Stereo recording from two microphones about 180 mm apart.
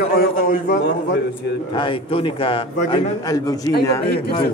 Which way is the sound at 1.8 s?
30° left (ahead or behind).